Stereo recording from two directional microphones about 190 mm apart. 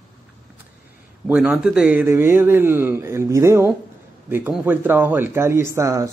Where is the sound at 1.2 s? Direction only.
5° right (ahead or behind).